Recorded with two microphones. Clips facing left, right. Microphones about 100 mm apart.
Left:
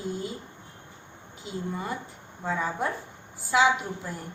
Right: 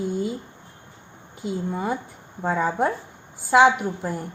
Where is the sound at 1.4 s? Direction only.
70° right (ahead or behind).